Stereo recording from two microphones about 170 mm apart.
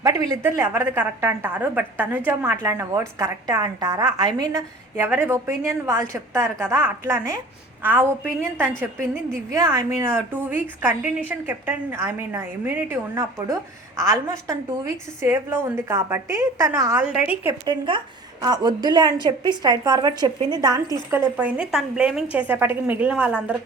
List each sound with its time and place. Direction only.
0.0 s a woman's voice: 20° right (ahead or behind)
17.0 s a woman's voice: 10° right (ahead or behind)
17.7 s a woman's voice: 30° right (ahead or behind); by 23.6 s 5° right (ahead or behind)